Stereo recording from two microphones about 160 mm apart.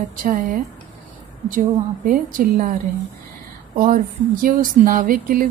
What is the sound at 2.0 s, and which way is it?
Speech, 60° right (ahead or behind).